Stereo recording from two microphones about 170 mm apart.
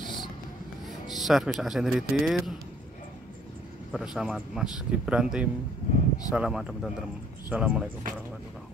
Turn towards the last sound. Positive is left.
turn(degrees=-10)  # may be behind; listen again after turning